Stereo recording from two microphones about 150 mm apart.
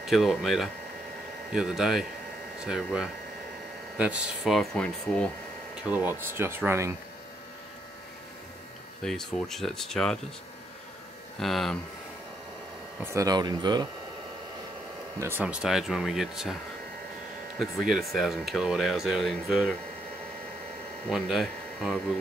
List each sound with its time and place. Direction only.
0.0 s speech: centre (ahead or behind)
5.9 s speech: 10° right (ahead or behind)
9.0 s speech: centre (ahead or behind)
11.3 s speech: centre (ahead or behind)
13.0 s speech: 20° right (ahead or behind)
15.1 s speech: 15° right (ahead or behind)
17.6 s speech: centre (ahead or behind)
21.1 s speech: centre (ahead or behind)